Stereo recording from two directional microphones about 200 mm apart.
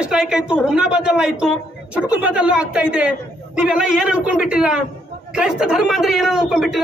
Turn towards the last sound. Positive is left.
turn(degrees=0)  # may be behind; listen again after turning